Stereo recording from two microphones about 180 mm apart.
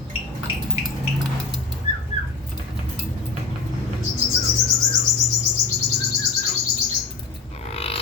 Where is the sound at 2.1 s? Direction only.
40° left (ahead or behind).